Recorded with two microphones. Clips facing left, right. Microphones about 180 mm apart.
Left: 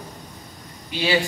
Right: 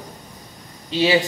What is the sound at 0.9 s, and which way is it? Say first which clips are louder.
Speech: right 5 dB; 25° right (ahead or behind).